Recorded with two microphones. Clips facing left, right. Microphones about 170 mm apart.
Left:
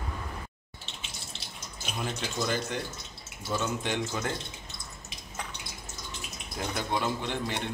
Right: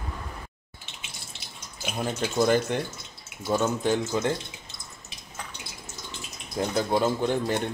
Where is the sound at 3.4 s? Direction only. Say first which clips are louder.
Right 7 dB; 45° right (ahead or behind).